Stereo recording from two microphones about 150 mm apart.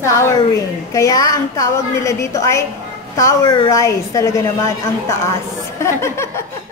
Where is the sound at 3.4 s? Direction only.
30° left (ahead or behind).